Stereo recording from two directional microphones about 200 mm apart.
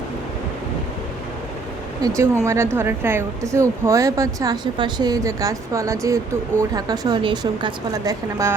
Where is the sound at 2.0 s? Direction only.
15° right (ahead or behind).